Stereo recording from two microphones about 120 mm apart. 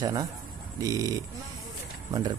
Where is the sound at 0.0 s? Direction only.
35° right (ahead or behind).